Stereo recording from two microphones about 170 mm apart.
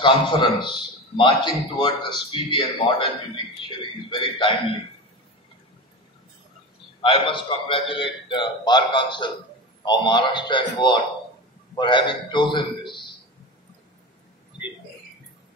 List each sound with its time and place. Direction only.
0.0 s a man's voice: 30° left (ahead or behind)
4.1 s a man's voice: 30° left (ahead or behind)
7.0 s a man's voice: 30° left (ahead or behind)